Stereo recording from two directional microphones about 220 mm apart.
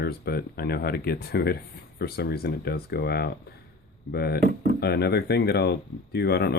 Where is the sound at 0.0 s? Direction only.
45° left (ahead or behind).